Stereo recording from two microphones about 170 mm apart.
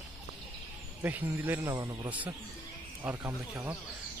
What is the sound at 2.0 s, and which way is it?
Speech, 10° right (ahead or behind).